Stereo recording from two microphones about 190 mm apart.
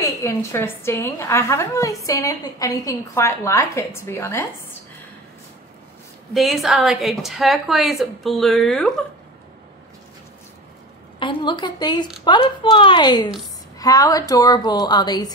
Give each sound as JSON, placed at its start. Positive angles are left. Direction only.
{"t": 0.0, "sound": "a woman's voice", "side_deg": 15}
{"t": 6.3, "sound": "a woman's voice", "side_deg": 0}
{"t": 11.1, "sound": "a woman's voice", "side_deg": 25}